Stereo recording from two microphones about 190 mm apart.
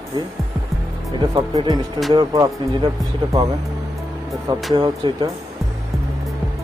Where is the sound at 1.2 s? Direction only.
20° right (ahead or behind).